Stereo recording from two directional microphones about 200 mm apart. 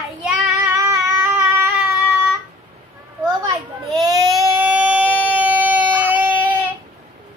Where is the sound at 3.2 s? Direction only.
20° right (ahead or behind).